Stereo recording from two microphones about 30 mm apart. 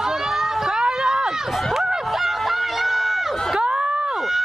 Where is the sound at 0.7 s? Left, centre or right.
Right.